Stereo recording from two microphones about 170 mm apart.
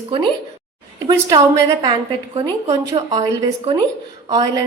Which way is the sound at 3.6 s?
35° right (ahead or behind).